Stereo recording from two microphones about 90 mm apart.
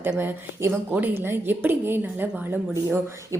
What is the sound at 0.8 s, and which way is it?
A woman's voice, 20° right (ahead or behind).